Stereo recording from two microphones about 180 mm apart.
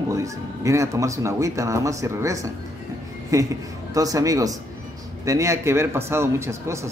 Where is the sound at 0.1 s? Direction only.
15° right (ahead or behind).